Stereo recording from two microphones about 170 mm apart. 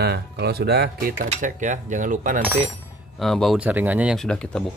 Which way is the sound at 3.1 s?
Centre (ahead or behind).